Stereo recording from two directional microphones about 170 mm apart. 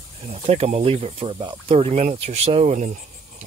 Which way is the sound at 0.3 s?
35° right (ahead or behind).